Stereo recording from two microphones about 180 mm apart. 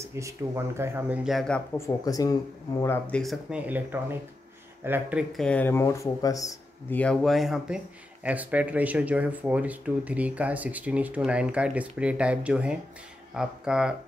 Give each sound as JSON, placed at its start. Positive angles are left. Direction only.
{"t": 0.0, "sound": "speech", "side_deg": -15}
{"t": 1.8, "sound": "speech", "side_deg": 20}
{"t": 3.2, "sound": "speech", "side_deg": 0}
{"t": 5.3, "sound": "speech", "side_deg": 5}
{"t": 7.0, "sound": "speech", "side_deg": 5}